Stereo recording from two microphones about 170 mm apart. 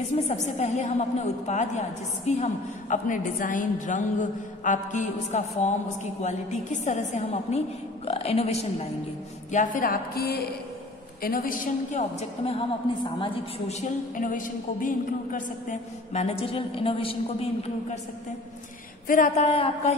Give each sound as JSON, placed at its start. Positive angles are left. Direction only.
{"t": 0.3, "sound": "a woman's voice", "side_deg": 40}
{"t": 9.5, "sound": "a woman's voice", "side_deg": 50}
{"t": 19.0, "sound": "a woman's voice", "side_deg": 50}